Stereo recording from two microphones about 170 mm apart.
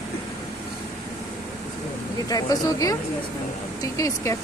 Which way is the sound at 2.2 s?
20° left (ahead or behind).